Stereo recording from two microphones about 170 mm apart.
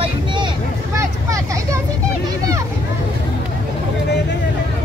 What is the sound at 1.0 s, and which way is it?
Vehicle, 20° right (ahead or behind).